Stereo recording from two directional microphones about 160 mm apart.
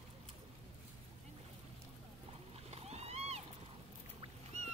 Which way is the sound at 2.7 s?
40° right (ahead or behind).